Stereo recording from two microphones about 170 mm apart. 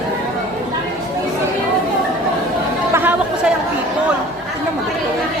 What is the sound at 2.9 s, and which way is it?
Chatter, 10° right (ahead or behind).